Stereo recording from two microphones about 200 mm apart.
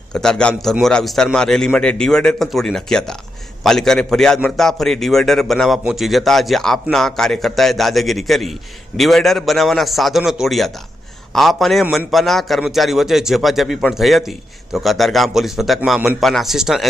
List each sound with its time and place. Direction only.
0.1 s a man's voice: 5° left (ahead or behind)